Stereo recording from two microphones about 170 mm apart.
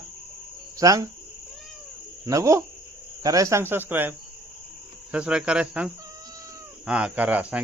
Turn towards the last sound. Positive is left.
turn(degrees=-10)  # may be behind; listen again after turning